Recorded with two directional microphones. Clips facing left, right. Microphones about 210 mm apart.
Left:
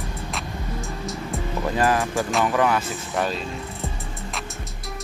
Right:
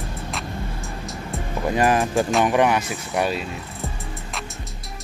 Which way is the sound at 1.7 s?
15° right (ahead or behind).